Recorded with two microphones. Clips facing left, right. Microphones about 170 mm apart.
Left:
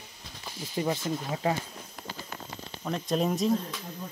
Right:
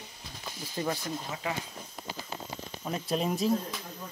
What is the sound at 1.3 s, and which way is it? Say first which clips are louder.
Speech: left 8 dB; 35° left (ahead or behind).